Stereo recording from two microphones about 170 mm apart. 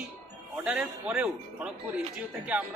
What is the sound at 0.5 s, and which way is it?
Speech, 10° right (ahead or behind).